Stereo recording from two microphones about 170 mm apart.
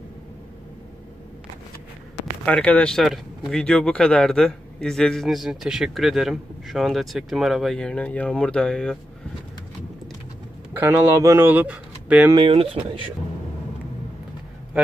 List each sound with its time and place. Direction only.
2.4 s speech: 5° left (ahead or behind)
10.7 s speech: 10° right (ahead or behind)
12.3 s speech: 30° right (ahead or behind)